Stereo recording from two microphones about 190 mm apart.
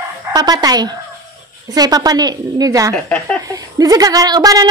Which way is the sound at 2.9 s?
5° left (ahead or behind).